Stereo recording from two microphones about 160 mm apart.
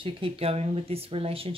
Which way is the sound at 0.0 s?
35° right (ahead or behind).